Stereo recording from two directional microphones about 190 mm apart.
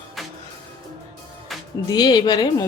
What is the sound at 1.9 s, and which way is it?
Speech, 20° left (ahead or behind).